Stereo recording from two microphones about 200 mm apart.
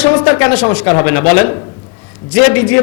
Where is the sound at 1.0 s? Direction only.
15° left (ahead or behind).